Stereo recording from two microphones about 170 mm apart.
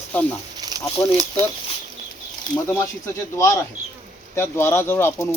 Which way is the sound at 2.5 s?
15° left (ahead or behind).